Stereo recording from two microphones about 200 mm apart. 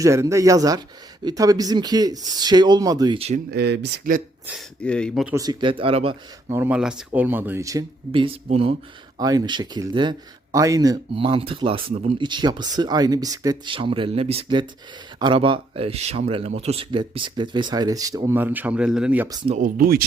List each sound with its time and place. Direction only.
0.0 s speech: 15° right (ahead or behind)
3.2 s speech: 30° right (ahead or behind)
3.5 s speech: 55° right (ahead or behind)
4.5 s speech: 5° left (ahead or behind)
5.2 s speech: 15° right (ahead or behind)
6.5 s speech: 10° right (ahead or behind); by 8.7 s 30° right (ahead or behind)
9.1 s speech: 20° right (ahead or behind)
19.5 s speech: 45° right (ahead or behind)